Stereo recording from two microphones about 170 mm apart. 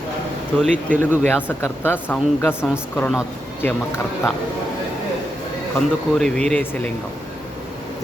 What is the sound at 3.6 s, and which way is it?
Speech, 10° left (ahead or behind).